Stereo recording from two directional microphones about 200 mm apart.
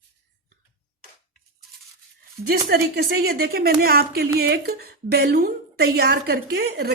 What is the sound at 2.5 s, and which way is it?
A woman's voice, 50° right (ahead or behind).